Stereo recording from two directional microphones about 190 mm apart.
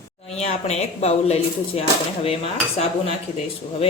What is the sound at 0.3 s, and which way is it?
Speech, 35° left (ahead or behind).